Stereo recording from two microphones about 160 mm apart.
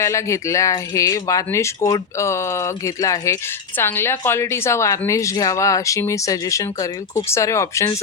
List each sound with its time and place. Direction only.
0.0 s speech: 20° left (ahead or behind)